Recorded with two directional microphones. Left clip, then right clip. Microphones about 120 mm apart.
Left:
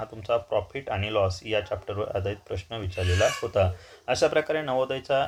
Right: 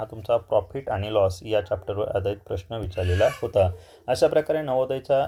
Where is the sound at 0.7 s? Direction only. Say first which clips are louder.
Right 2 dB; 35° right (ahead or behind).